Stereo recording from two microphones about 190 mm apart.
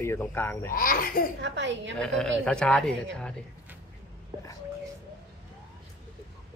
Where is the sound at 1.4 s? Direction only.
70° right (ahead or behind).